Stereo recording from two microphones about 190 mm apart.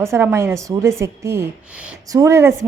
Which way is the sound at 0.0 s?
15° right (ahead or behind).